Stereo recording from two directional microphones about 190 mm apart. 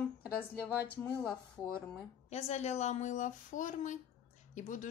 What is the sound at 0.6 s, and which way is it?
Speech, 10° right (ahead or behind).